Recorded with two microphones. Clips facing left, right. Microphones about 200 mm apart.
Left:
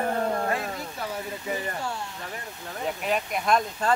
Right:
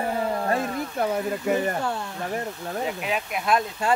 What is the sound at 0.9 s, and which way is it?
Speech, 55° right (ahead or behind).